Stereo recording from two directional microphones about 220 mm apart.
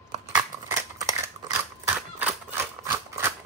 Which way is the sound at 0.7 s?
15° right (ahead or behind).